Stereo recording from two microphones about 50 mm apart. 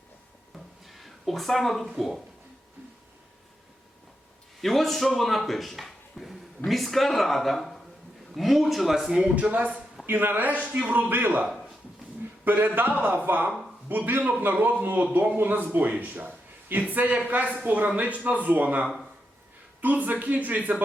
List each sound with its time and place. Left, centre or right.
0.9 s speech: centre
4.6 s speech: centre
9.3 s a man's voice: right
10.1 s a man's voice: right
12.5 s a man's voice: right
15.4 s a man's voice: right